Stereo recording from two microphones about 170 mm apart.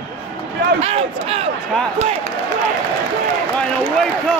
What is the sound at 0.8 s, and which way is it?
Speech, 35° right (ahead or behind).